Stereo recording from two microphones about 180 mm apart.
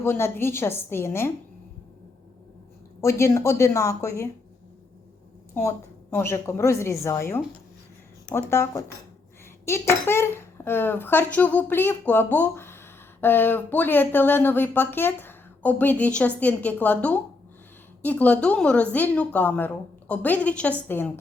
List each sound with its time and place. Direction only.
0.0 s speech: 15° left (ahead or behind)
3.0 s speech: 15° left (ahead or behind)
6.1 s speech: 15° left (ahead or behind)